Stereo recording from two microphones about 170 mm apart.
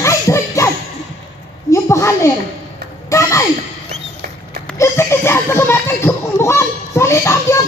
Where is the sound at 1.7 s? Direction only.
15° left (ahead or behind).